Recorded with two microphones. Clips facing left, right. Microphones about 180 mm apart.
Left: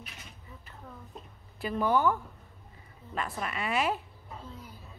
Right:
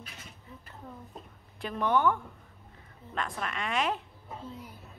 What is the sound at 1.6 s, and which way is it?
Speech, 5° left (ahead or behind).